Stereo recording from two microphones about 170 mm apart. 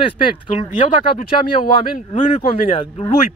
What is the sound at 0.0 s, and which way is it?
Speech, 30° left (ahead or behind).